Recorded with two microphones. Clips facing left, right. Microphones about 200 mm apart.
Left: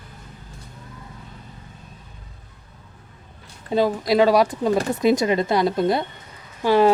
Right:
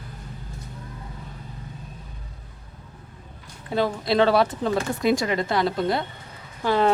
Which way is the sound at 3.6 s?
15° left (ahead or behind).